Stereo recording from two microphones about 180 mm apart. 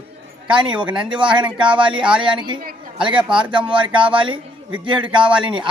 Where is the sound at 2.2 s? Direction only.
25° right (ahead or behind).